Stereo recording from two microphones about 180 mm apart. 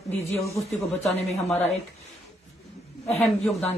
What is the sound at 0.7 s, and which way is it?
Speech, 35° left (ahead or behind).